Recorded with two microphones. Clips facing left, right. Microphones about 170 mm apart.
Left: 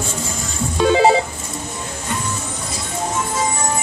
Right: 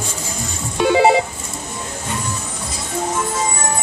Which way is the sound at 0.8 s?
15° right (ahead or behind).